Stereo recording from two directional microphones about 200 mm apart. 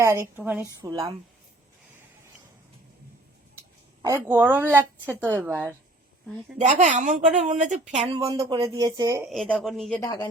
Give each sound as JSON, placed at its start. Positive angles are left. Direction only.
{"t": 0.0, "sound": "a woman's voice", "side_deg": -15}
{"t": 4.0, "sound": "a woman's voice", "side_deg": -15}
{"t": 6.6, "sound": "a woman's voice", "side_deg": -35}
{"t": 8.1, "sound": "speech", "side_deg": -20}
{"t": 9.3, "sound": "speech", "side_deg": 0}
{"t": 10.0, "sound": "speech", "side_deg": 20}